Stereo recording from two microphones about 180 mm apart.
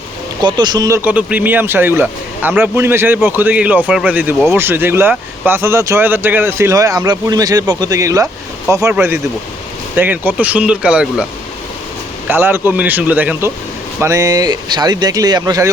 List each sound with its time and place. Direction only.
0.4 s speech: 25° right (ahead or behind); by 11.3 s 5° right (ahead or behind)
12.3 s speech: 10° right (ahead or behind)